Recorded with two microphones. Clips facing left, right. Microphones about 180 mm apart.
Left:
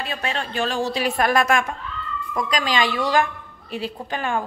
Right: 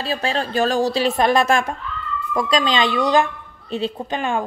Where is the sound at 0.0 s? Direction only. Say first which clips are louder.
Right 5 dB; 30° right (ahead or behind).